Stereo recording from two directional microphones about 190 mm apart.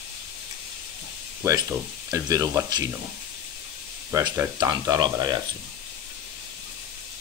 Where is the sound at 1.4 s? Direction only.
15° right (ahead or behind).